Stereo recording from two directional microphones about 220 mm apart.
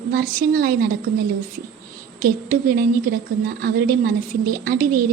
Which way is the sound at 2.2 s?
40° right (ahead or behind).